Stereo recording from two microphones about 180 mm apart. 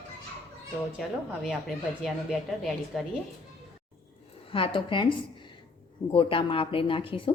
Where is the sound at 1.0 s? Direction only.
Centre (ahead or behind).